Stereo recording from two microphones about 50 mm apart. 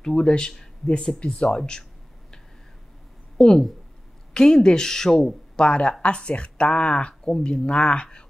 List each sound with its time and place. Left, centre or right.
0.0 s speech: centre
3.3 s speech: centre
5.7 s speech: left